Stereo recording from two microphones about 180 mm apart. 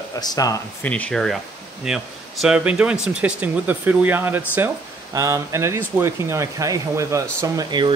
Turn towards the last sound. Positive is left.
turn(degrees=-25)  # may be behind; listen again after turning